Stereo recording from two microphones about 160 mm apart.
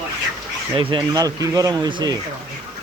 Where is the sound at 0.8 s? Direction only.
30° right (ahead or behind).